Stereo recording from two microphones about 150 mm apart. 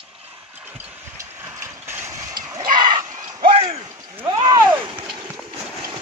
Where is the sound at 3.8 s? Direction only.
25° right (ahead or behind).